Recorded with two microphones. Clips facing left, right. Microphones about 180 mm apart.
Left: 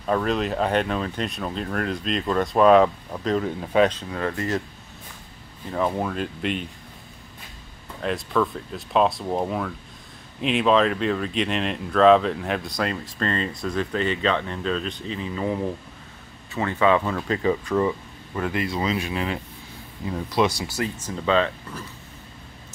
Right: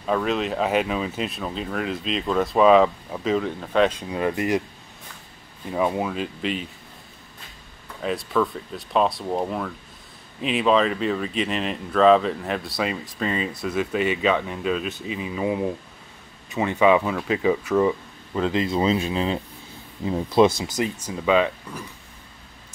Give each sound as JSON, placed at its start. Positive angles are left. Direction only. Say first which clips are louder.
{"t": 0.0, "sound": "speech", "louder": "even", "side_deg": 0}
{"t": 3.9, "sound": "speech", "louder": "right 3 dB", "side_deg": -15}
{"t": 5.7, "sound": "speech", "louder": "right 1 dB", "side_deg": -10}
{"t": 8.0, "sound": "speech", "louder": "even", "side_deg": 0}
{"t": 18.3, "sound": "speech", "louder": "right 4 dB", "side_deg": -20}